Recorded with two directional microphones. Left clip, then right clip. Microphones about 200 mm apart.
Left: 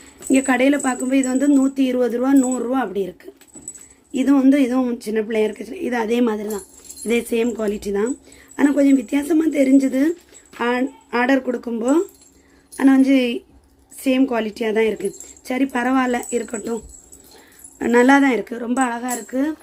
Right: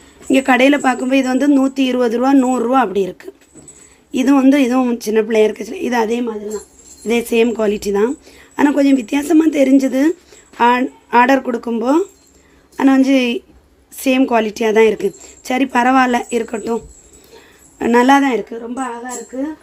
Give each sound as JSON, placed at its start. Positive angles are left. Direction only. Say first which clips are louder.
{"t": 0.3, "sound": "speech", "louder": "right 5 dB", "side_deg": -15}
{"t": 18.6, "sound": "a woman's voice", "louder": "left 3 dB", "side_deg": 10}